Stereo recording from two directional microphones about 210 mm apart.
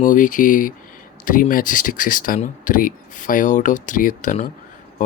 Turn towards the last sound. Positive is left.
turn(degrees=40)  # may be behind; listen again after turning